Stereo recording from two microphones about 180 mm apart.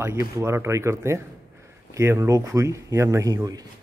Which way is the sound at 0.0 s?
15° right (ahead or behind).